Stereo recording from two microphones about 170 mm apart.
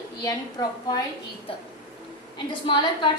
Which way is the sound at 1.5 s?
35° left (ahead or behind).